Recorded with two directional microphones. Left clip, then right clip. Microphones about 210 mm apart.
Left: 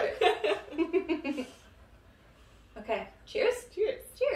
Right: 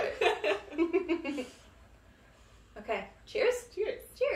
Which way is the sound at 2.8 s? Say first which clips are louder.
Left 2 dB; centre (ahead or behind).